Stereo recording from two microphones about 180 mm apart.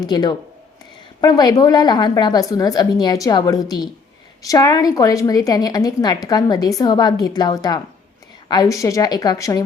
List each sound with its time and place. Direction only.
0.0 s a woman's voice: 20° left (ahead or behind)